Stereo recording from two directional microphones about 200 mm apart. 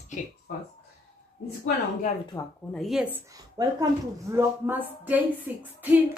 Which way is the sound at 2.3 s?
15° left (ahead or behind).